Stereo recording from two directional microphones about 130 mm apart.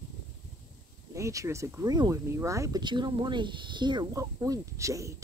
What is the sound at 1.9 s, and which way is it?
Speech, 30° right (ahead or behind).